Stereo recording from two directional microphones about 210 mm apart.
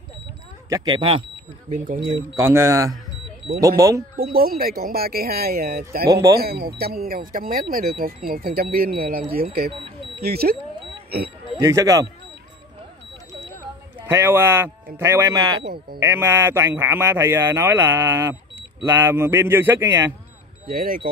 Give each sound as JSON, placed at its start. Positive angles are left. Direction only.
{"t": 0.7, "sound": "speech", "side_deg": -20}
{"t": 2.3, "sound": "speech", "side_deg": -15}
{"t": 4.2, "sound": "speech", "side_deg": -45}
{"t": 11.5, "sound": "speech", "side_deg": -15}
{"t": 13.9, "sound": "speech", "side_deg": -10}
{"t": 15.6, "sound": "speech", "side_deg": -50}
{"t": 16.0, "sound": "speech", "side_deg": -10}
{"t": 20.6, "sound": "speech", "side_deg": -45}